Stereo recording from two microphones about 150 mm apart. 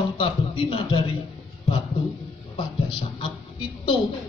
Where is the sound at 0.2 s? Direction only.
35° left (ahead or behind).